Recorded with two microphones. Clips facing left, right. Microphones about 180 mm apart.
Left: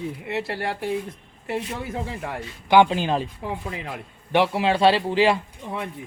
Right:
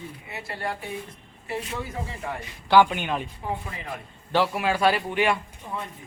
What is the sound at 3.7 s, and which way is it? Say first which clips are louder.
Speech: left 3 dB; 85° left.